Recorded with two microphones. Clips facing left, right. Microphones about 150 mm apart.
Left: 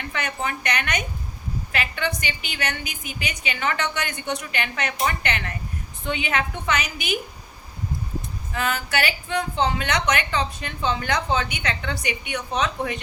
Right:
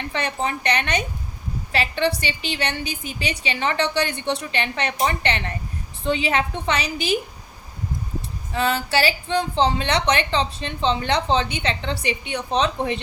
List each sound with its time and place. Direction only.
0.1 s a woman's voice: 30° right (ahead or behind)
8.5 s a woman's voice: 30° right (ahead or behind)